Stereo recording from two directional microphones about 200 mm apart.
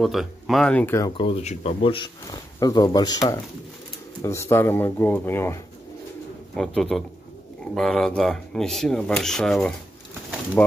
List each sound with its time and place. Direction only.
0.0 s speech: centre (ahead or behind)
1.1 s speech: 30° left (ahead or behind); by 9.8 s 5° left (ahead or behind)